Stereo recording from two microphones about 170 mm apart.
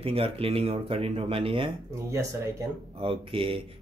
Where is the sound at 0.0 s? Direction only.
35° right (ahead or behind).